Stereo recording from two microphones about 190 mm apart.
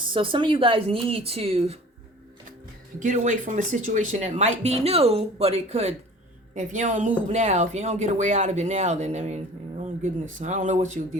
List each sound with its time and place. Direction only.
0.0 s speech: 25° right (ahead or behind)
3.0 s speech: 40° right (ahead or behind)